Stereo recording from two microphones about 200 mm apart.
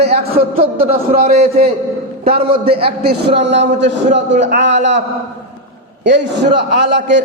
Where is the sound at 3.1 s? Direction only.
60° right (ahead or behind).